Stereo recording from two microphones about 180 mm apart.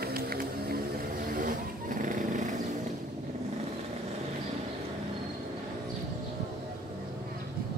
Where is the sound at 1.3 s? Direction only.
50° right (ahead or behind).